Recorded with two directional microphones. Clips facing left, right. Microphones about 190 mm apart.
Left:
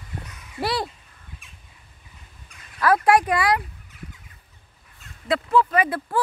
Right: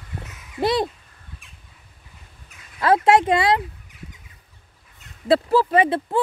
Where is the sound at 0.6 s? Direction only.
20° right (ahead or behind).